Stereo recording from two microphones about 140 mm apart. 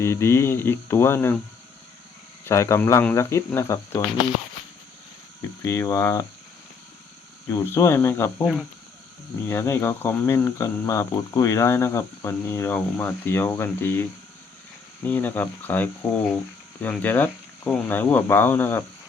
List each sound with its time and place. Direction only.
0.0 s speech: 20° left (ahead or behind)
2.4 s speech: 20° left (ahead or behind)
5.6 s speech: 20° left (ahead or behind)
7.5 s speech: 20° left (ahead or behind)
9.5 s speech: 20° left (ahead or behind)